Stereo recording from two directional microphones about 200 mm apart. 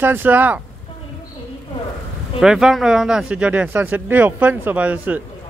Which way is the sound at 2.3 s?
Centre (ahead or behind).